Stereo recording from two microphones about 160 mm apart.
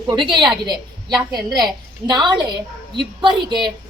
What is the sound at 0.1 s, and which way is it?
A woman's voice, 30° right (ahead or behind).